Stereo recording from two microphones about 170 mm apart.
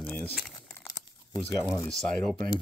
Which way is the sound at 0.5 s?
20° left (ahead or behind).